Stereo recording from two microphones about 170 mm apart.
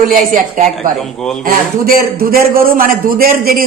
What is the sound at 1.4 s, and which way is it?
A man's voice, 60° right (ahead or behind).